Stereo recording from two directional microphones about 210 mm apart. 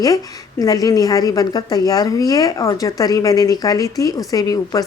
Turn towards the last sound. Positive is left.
turn(degrees=15)  # may be behind; listen again after turning